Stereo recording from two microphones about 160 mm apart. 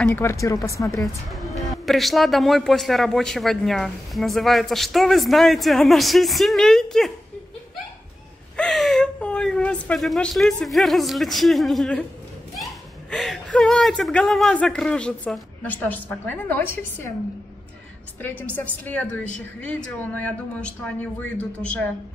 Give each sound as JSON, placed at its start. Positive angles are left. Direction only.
{"t": 0.0, "sound": "speech", "side_deg": 15}
{"t": 0.9, "sound": "a woman's voice", "side_deg": 0}
{"t": 8.5, "sound": "speech", "side_deg": 0}
{"t": 13.1, "sound": "speech", "side_deg": 0}
{"t": 18.2, "sound": "a woman's voice", "side_deg": 10}